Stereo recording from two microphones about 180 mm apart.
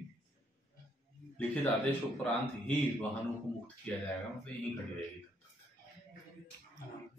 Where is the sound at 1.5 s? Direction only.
10° left (ahead or behind).